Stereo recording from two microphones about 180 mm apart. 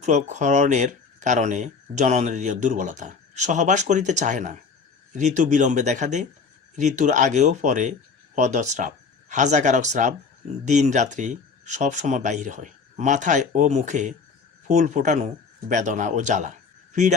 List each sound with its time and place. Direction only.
0.0 s speech: 40° right (ahead or behind)